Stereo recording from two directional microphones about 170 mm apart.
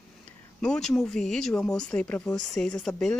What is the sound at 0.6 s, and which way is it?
Speech, 5° left (ahead or behind).